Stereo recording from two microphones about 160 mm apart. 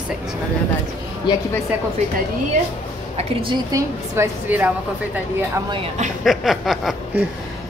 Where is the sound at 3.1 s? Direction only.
35° right (ahead or behind).